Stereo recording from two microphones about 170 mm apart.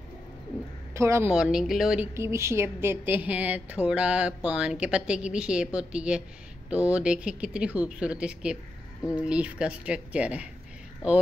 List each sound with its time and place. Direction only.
0.9 s a woman's voice: 15° right (ahead or behind)
1.3 s speech: 5° right (ahead or behind)
2.1 s a woman's voice: 15° right (ahead or behind)